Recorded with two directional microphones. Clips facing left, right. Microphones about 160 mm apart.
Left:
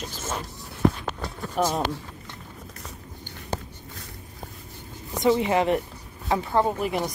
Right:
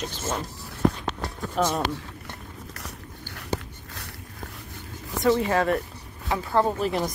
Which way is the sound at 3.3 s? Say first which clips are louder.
Right 2 dB; 80° right.